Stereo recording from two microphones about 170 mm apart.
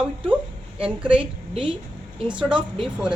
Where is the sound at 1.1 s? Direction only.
30° right (ahead or behind).